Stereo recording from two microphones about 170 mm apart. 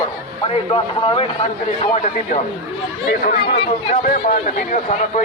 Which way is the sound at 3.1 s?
60° left (ahead or behind).